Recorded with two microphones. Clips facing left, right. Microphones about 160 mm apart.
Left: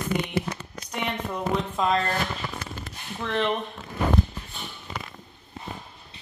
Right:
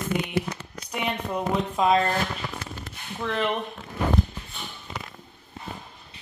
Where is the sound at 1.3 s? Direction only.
10° right (ahead or behind).